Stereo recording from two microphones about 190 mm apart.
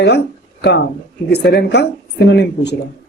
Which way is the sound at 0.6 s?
65° left (ahead or behind).